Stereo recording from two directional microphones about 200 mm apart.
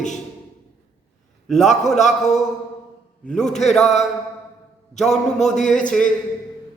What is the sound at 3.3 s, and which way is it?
Speech, 5° left (ahead or behind).